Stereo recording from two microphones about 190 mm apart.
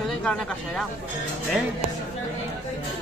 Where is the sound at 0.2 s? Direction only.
5° left (ahead or behind).